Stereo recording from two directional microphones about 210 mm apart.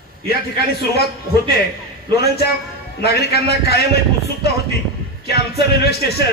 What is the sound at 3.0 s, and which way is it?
Speech, 50° left (ahead or behind).